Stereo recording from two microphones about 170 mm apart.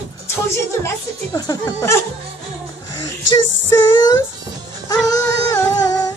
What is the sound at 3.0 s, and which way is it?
Child singing, 20° left (ahead or behind).